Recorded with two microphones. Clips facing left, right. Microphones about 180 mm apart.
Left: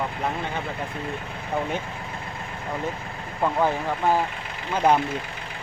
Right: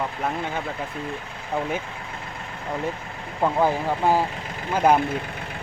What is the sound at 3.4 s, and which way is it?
Speech, 10° right (ahead or behind).